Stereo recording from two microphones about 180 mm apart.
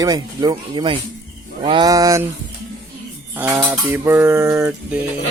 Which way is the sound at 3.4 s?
20° right (ahead or behind).